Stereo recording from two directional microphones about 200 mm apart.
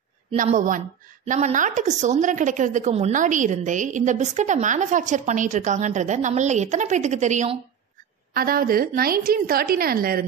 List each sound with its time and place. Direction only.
0.4 s a woman's voice: 40° right (ahead or behind)
8.3 s a woman's voice: 50° right (ahead or behind)